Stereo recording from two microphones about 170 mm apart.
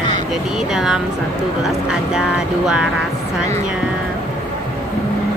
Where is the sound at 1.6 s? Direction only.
5° right (ahead or behind).